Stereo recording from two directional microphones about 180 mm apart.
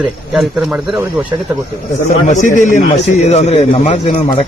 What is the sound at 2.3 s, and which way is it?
A man's voice, 45° left (ahead or behind).